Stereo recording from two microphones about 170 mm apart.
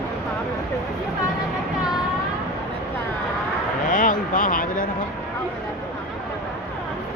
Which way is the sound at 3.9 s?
50° left (ahead or behind).